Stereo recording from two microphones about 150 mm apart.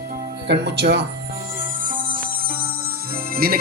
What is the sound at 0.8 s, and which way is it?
Speech, 90° right.